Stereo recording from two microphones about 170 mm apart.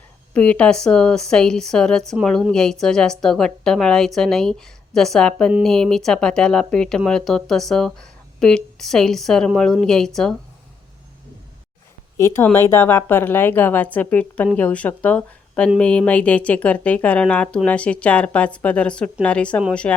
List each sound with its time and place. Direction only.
0.3 s speech: 5° left (ahead or behind)
12.1 s a woman's voice: 15° left (ahead or behind)